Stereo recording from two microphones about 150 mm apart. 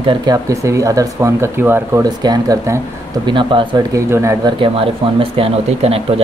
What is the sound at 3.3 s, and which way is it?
Speech, 35° right (ahead or behind).